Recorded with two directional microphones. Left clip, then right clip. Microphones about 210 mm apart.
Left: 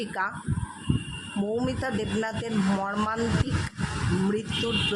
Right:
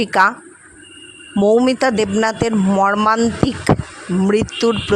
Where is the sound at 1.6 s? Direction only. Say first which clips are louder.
Right 14 dB; 45° right (ahead or behind).